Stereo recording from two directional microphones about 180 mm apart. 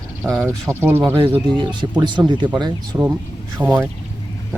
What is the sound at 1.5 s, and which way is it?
Speech, 25° right (ahead or behind).